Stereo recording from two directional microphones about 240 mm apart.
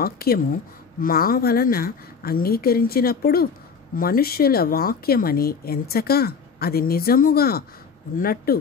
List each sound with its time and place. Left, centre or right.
0.0 s speech: left